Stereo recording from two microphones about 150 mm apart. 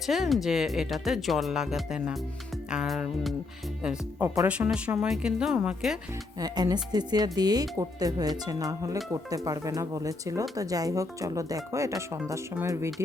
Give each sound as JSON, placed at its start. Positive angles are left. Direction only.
{"t": 0.0, "sound": "speech", "side_deg": 0}
{"t": 4.4, "sound": "speech", "side_deg": -10}
{"t": 6.4, "sound": "speech", "side_deg": -25}